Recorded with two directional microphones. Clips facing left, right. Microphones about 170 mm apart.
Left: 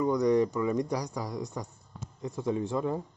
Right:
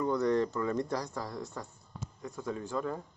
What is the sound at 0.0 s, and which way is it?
Speech, 15° left (ahead or behind).